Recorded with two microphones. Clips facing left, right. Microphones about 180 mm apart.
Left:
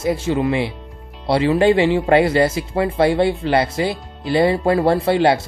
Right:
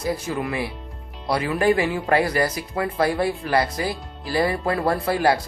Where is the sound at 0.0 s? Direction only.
25° left (ahead or behind).